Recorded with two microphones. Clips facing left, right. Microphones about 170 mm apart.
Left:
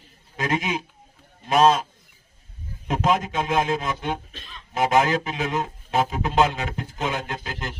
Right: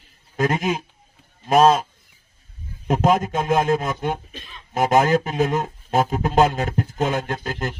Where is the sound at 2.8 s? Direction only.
45° right (ahead or behind).